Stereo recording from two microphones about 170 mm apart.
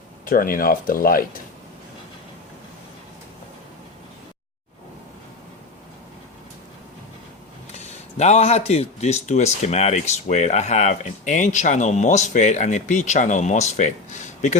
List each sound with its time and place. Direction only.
0.3 s speech: 55° left (ahead or behind)
8.2 s speech: 40° left (ahead or behind)